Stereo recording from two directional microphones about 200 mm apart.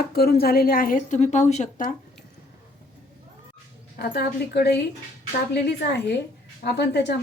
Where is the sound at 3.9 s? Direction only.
55° left (ahead or behind).